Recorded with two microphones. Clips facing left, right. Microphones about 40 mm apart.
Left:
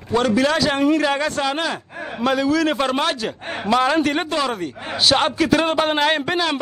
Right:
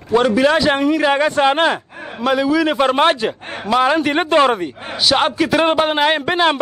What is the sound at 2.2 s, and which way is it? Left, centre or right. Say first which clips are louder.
Speech: right 3 dB; centre.